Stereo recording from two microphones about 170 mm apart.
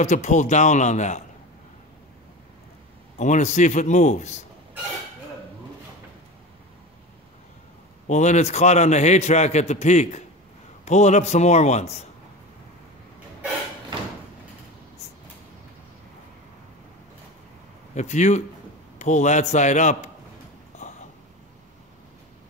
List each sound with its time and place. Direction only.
0.0 s a man's voice: 45° left (ahead or behind)
3.2 s a man's voice: 45° left (ahead or behind)
8.1 s a man's voice: 45° left (ahead or behind)
17.9 s a man's voice: 45° left (ahead or behind)
20.8 s a sound: 45° left (ahead or behind)